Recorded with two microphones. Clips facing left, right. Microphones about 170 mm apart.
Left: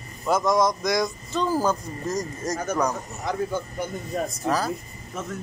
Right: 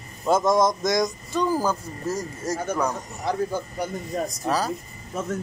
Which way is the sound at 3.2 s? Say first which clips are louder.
Right 2 dB; 35° right (ahead or behind).